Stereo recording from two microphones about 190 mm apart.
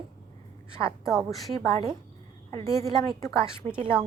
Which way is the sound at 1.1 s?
Centre (ahead or behind).